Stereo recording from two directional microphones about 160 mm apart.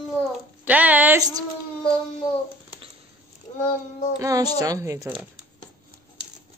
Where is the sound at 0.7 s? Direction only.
10° right (ahead or behind).